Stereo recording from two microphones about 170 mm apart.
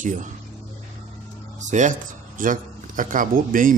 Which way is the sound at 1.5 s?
45° right (ahead or behind).